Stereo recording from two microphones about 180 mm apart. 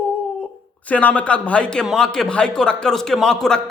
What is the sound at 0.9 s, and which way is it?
A man's voice, 10° left (ahead or behind).